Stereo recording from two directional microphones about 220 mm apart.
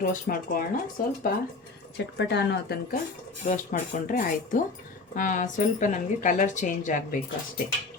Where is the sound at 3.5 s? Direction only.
35° left (ahead or behind).